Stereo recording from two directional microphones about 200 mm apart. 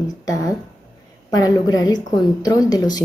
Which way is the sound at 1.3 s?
20° left (ahead or behind).